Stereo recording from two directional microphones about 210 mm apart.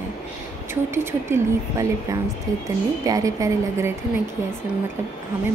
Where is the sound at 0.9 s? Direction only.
10° right (ahead or behind).